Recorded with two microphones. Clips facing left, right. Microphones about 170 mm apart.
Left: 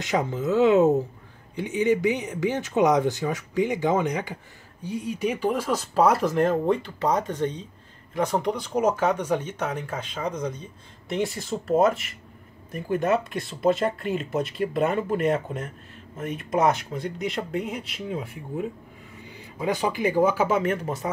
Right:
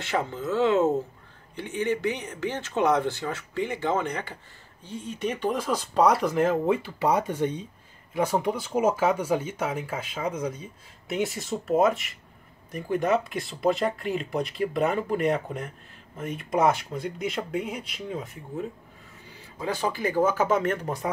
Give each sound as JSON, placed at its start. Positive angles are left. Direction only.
{"t": 0.0, "sound": "speech", "side_deg": 15}